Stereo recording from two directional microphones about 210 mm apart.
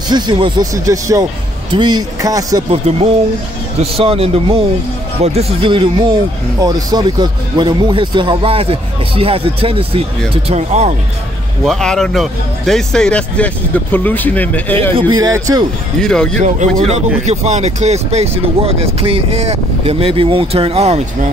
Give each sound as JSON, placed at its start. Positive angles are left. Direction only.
{"t": 0.1, "sound": "speech", "side_deg": -20}
{"t": 11.6, "sound": "speech", "side_deg": 0}
{"t": 15.0, "sound": "speech", "side_deg": -20}
{"t": 16.0, "sound": "speech", "side_deg": 5}
{"t": 16.4, "sound": "speech", "side_deg": -35}